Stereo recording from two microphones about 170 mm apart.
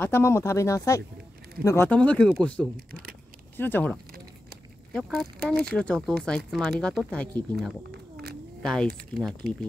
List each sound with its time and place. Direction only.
0.0 s speech: 15° left (ahead or behind)
2.9 s speech: 55° right (ahead or behind)
3.5 s speech: 10° left (ahead or behind)
7.9 s a sound: 70° right (ahead or behind)
8.6 s speech: 5° left (ahead or behind)